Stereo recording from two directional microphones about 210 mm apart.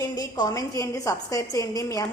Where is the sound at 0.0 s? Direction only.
20° left (ahead or behind).